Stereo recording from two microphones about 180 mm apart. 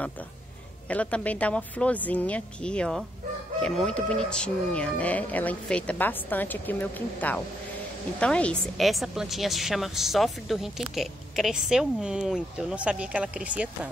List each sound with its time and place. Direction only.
0.8 s a woman's voice: 10° left (ahead or behind)